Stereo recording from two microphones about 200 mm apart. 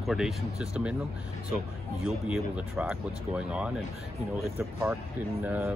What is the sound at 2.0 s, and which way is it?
Speech, 5° right (ahead or behind).